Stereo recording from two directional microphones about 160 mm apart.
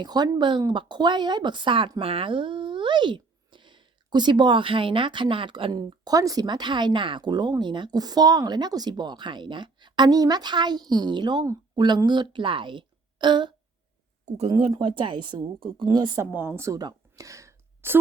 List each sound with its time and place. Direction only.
0.0 s speech: 25° right (ahead or behind)
14.3 s speech: 40° right (ahead or behind); by 16.2 s 25° right (ahead or behind)
16.2 s a woman's voice: 10° right (ahead or behind)